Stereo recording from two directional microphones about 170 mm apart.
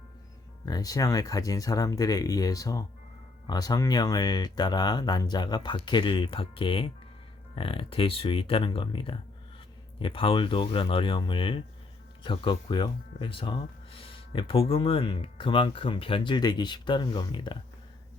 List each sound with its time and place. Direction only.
0.6 s speech: 20° left (ahead or behind)